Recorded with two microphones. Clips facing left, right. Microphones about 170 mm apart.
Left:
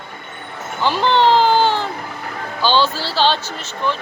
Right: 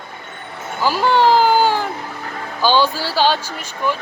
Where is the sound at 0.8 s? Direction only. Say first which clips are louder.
Even; 5° right (ahead or behind).